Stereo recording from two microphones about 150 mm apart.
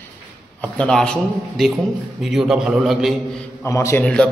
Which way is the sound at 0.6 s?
5° left (ahead or behind).